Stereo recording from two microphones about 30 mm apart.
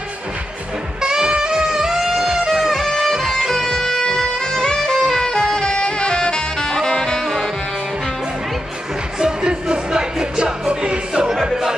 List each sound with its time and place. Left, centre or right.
1.0 s music: right
3.3 s music: centre
4.0 s music: left
5.3 s saxophone: left
9.2 s music: right